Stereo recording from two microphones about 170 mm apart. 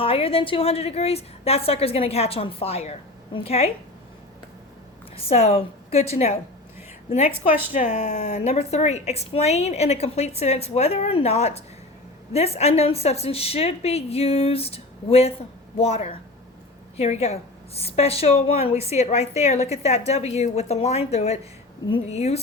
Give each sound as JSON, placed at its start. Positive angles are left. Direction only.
{"t": 0.0, "sound": "a woman's voice", "side_deg": 35}
{"t": 5.1, "sound": "a woman's voice", "side_deg": 35}
{"t": 7.3, "sound": "a woman's voice", "side_deg": -10}
{"t": 7.7, "sound": "a woman's voice", "side_deg": 45}